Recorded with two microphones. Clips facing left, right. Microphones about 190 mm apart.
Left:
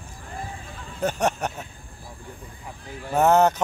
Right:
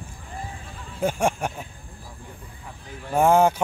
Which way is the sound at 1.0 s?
10° right (ahead or behind).